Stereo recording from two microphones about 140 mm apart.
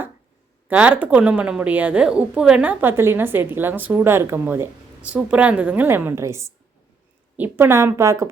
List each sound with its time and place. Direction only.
0.7 s a woman's voice: 10° right (ahead or behind)